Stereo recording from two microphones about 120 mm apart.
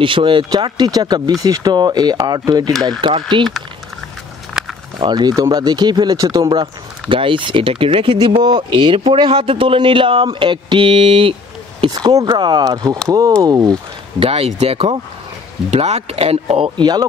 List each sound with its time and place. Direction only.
0.0 s speech: 45° right (ahead or behind)
5.0 s speech: 35° right (ahead or behind)
11.9 s speech: 30° right (ahead or behind)
14.2 s speech: 55° right (ahead or behind); by 17.0 s 40° right (ahead or behind)